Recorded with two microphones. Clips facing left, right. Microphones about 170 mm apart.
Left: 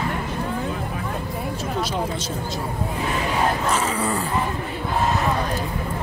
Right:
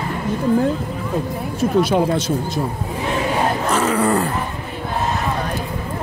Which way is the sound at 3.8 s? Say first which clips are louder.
Right 6 dB; 60° right (ahead or behind).